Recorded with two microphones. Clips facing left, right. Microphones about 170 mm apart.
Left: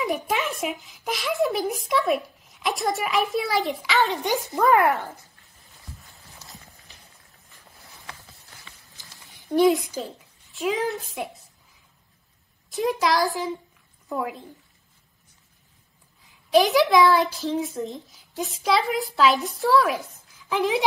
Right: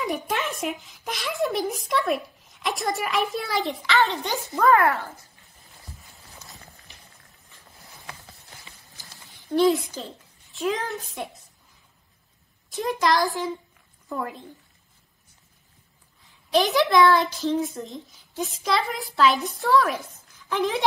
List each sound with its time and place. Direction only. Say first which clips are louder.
0.0 s a child's voice: left 2 dB; centre (ahead or behind)
4.2 s speech: left 1 dB; 15° left (ahead or behind)
5.9 s clip-clop: right 1 dB; centre (ahead or behind)
7.8 s a sound: right 1 dB; 20° right (ahead or behind)
8.9 s a sound: right 1 dB; 20° left (ahead or behind)
10.5 s a child's voice: left 2 dB; centre (ahead or behind)
12.7 s a child's voice: left 1 dB; centre (ahead or behind)
16.5 s a child's voice: left 2 dB; centre (ahead or behind)